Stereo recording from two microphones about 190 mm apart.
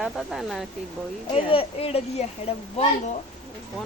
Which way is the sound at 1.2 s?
30° left (ahead or behind).